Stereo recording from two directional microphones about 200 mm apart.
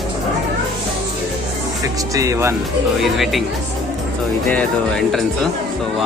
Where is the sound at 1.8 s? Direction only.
15° right (ahead or behind).